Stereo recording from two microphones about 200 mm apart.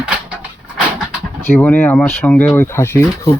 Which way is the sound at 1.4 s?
10° left (ahead or behind).